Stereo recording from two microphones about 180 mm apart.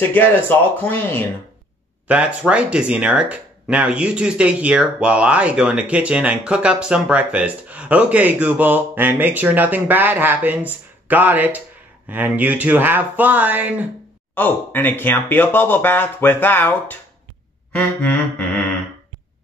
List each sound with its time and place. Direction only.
0.1 s speech: 10° left (ahead or behind)
2.0 s speech: 5° right (ahead or behind)
14.3 s speech: 10° left (ahead or behind)